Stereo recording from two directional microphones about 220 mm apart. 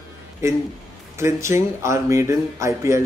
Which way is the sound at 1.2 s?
10° right (ahead or behind).